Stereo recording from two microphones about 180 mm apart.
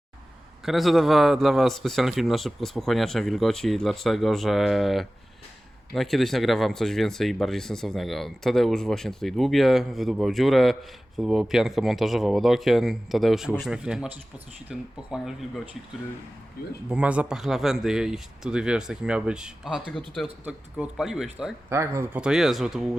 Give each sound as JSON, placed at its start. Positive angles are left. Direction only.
{"t": 0.6, "sound": "speech", "side_deg": 0}
{"t": 16.6, "sound": "speech", "side_deg": 55}
{"t": 16.9, "sound": "speech", "side_deg": -5}